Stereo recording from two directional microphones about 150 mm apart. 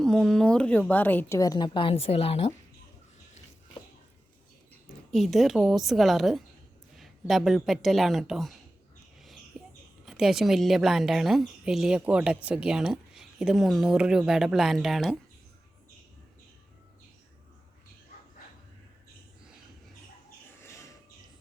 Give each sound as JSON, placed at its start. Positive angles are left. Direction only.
{"t": 0.0, "sound": "a woman's voice", "side_deg": 5}
{"t": 1.4, "sound": "a woman's voice", "side_deg": 25}
{"t": 5.1, "sound": "a woman's voice", "side_deg": 0}
{"t": 9.2, "sound": "a sound", "side_deg": 0}
{"t": 10.1, "sound": "a woman's voice", "side_deg": 0}